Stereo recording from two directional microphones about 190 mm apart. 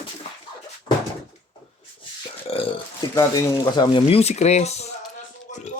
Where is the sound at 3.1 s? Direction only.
20° left (ahead or behind); by 4.8 s 35° left (ahead or behind).